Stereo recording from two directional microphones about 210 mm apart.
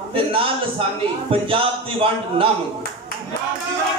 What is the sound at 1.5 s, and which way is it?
Speech, 25° right (ahead or behind).